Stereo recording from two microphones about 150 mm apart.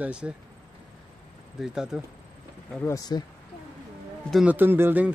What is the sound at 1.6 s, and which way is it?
Speech, 5° right (ahead or behind).